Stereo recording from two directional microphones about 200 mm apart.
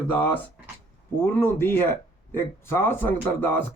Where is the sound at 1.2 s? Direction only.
10° left (ahead or behind).